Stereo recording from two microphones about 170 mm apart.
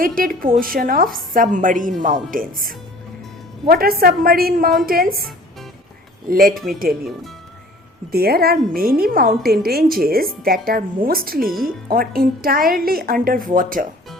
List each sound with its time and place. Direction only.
0.0 s a woman's voice: 55° right (ahead or behind)
8.1 s a woman's voice: 65° right (ahead or behind)